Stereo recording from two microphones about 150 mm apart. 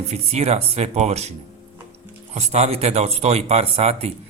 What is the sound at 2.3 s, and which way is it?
Speech, 50° right (ahead or behind).